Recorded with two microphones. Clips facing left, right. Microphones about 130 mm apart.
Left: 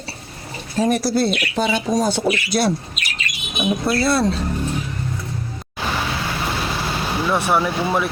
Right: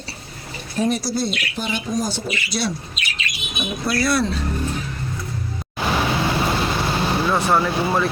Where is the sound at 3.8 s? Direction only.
25° left (ahead or behind).